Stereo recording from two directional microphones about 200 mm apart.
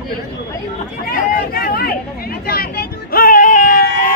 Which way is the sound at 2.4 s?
50° left (ahead or behind).